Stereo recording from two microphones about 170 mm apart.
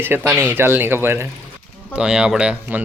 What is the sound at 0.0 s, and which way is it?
Speech, 10° right (ahead or behind).